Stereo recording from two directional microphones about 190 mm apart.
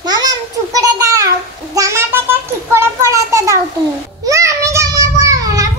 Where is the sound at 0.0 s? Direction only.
20° right (ahead or behind).